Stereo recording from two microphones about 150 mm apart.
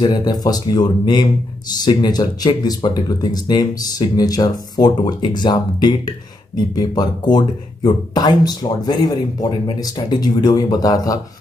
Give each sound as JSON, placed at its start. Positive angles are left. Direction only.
{"t": 0.0, "sound": "speech", "side_deg": 25}